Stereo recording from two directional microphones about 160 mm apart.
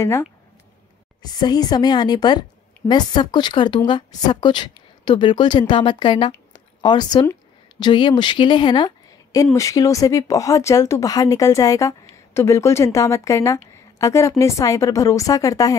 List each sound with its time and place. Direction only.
0.0 s speech: 15° left (ahead or behind)